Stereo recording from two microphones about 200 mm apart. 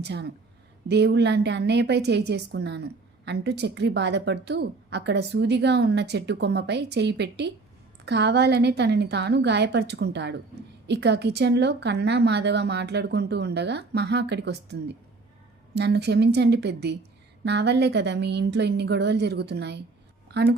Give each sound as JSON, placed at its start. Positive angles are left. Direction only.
{"t": 0.0, "sound": "a woman's voice", "side_deg": -60}